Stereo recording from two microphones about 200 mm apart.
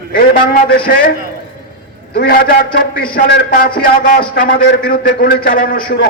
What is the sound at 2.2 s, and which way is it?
A man's voice, 50° left (ahead or behind).